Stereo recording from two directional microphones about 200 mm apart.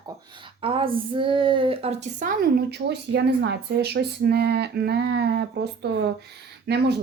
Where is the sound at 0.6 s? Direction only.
25° right (ahead or behind); by 6.9 s 60° right (ahead or behind).